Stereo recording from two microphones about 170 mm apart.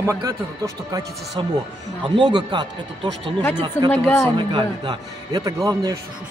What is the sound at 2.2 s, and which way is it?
A man's voice, 25° right (ahead or behind).